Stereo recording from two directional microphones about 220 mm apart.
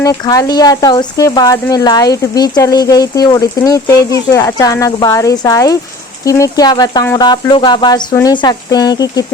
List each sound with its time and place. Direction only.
0.0 s speech: 15° left (ahead or behind)